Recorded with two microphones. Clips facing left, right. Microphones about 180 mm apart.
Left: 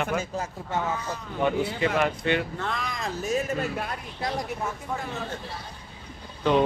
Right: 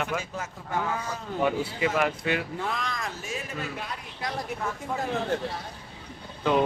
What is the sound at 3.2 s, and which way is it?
Speech, 45° left (ahead or behind).